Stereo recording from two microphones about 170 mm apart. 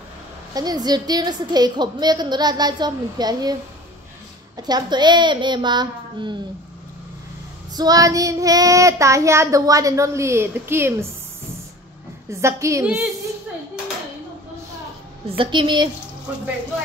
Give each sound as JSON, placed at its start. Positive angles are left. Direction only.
{"t": 0.6, "sound": "child singing", "side_deg": -25}
{"t": 4.6, "sound": "child singing", "side_deg": -25}
{"t": 7.7, "sound": "child singing", "side_deg": -20}
{"t": 12.3, "sound": "a woman's voice", "side_deg": -15}
{"t": 15.2, "sound": "child singing", "side_deg": -30}